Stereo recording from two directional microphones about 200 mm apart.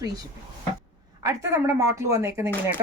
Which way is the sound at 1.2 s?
15° right (ahead or behind).